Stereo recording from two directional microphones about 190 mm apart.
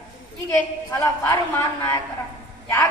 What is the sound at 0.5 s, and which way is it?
A woman's voice, 15° left (ahead or behind).